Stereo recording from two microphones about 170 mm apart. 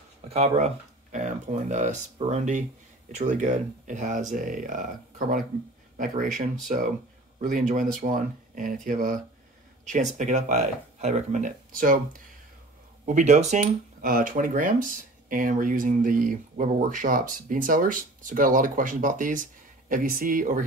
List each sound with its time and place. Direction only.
0.3 s speech: 40° right (ahead or behind)
5.9 s speech: 50° right (ahead or behind)
7.4 s speech: 50° right (ahead or behind)